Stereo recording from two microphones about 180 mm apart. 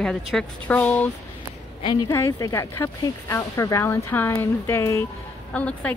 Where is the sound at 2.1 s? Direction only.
15° left (ahead or behind).